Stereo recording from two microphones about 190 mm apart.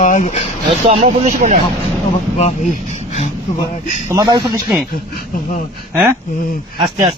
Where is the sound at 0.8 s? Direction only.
30° right (ahead or behind).